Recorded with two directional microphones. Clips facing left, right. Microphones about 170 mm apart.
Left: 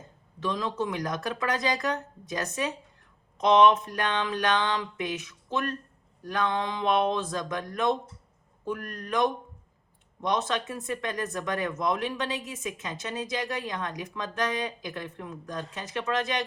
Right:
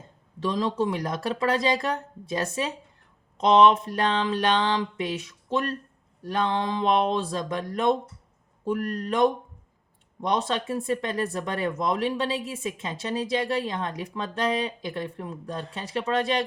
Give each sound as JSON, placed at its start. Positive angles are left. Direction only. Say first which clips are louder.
{"t": 0.3, "sound": "a woman's voice", "louder": "right 4 dB", "side_deg": -30}